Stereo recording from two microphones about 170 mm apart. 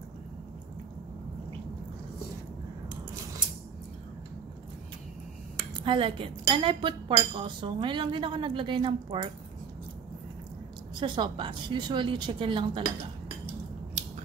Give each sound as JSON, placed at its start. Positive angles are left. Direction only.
{"t": 5.9, "sound": "speech", "side_deg": -30}
{"t": 11.0, "sound": "speech", "side_deg": -30}